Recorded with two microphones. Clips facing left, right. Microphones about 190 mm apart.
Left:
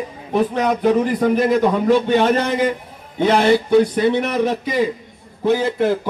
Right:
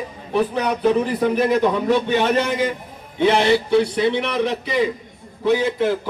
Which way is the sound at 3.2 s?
50° left (ahead or behind).